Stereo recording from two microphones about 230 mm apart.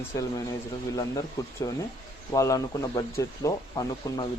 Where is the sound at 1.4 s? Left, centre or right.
Centre.